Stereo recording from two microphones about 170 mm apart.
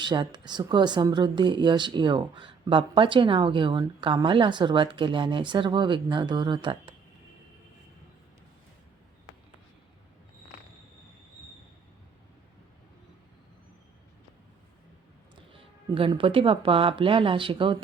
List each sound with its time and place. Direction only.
0.0 s a woman's voice: 25° right (ahead or behind)
15.5 s speech: 30° right (ahead or behind)